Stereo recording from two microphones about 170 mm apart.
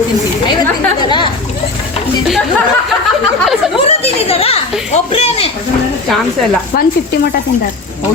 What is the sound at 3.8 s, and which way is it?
A woman's voice, 35° left (ahead or behind).